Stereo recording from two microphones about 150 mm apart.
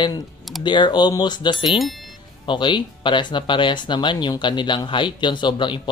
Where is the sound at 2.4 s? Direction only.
30° left (ahead or behind).